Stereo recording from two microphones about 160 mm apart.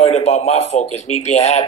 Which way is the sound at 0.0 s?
40° left (ahead or behind).